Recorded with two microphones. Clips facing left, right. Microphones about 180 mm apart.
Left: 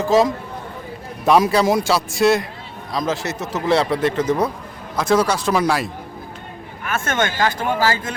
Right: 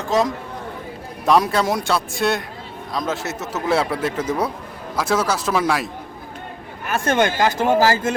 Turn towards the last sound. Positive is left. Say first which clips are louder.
# right 3 dB
turn(degrees=-40)  # may be behind; listen again after turning